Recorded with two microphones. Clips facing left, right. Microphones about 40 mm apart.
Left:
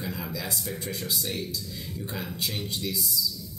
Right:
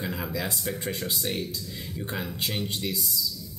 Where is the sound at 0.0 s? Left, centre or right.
Right.